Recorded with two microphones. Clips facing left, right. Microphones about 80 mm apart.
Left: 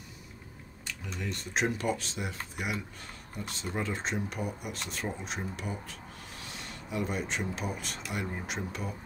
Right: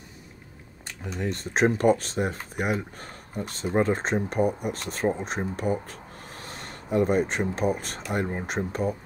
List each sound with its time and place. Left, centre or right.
1.2 s speech: right